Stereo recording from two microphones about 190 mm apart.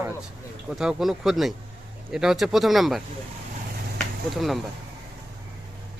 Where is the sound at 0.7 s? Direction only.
5° right (ahead or behind).